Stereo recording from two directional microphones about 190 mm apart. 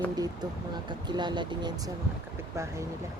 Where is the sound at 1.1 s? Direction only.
25° right (ahead or behind).